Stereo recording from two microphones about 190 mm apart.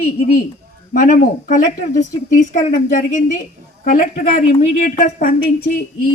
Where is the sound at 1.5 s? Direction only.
40° left (ahead or behind).